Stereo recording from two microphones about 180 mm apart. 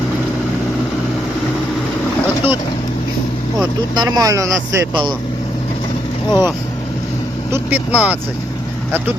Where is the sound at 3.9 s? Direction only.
25° right (ahead or behind).